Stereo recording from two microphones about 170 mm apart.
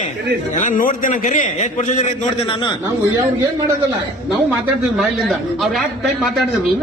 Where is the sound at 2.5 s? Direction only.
25° left (ahead or behind).